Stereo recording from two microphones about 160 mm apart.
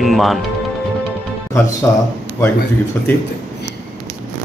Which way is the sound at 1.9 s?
15° left (ahead or behind).